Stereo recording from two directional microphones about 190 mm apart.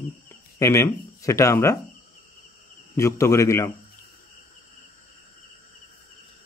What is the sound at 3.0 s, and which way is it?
Speech, 15° left (ahead or behind).